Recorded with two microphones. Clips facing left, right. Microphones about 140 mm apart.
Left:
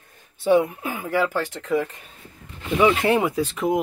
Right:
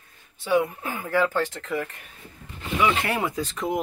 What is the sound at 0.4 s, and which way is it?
Speech, 25° left (ahead or behind).